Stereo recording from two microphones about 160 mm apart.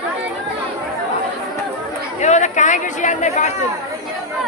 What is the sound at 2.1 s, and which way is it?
Speech, 45° left (ahead or behind).